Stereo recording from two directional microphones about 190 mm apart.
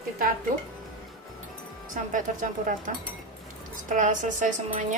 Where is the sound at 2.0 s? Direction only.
40° right (ahead or behind).